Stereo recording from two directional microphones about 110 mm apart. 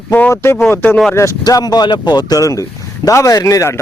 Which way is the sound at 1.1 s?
30° left (ahead or behind).